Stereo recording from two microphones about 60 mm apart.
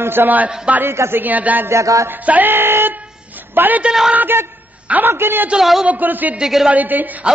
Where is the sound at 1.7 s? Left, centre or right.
Right.